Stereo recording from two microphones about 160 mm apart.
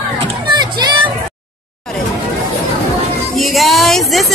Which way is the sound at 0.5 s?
30° right (ahead or behind).